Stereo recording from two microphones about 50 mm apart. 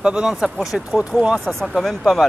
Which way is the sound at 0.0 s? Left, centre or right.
Centre.